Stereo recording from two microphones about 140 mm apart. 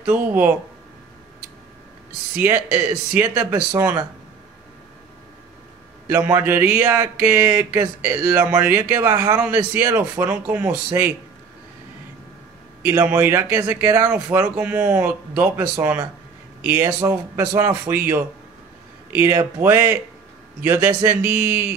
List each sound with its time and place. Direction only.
0.0 s speech: 10° right (ahead or behind)
2.3 s speech: 15° right (ahead or behind)
6.0 s speech: 20° right (ahead or behind)
12.8 s speech: 15° right (ahead or behind)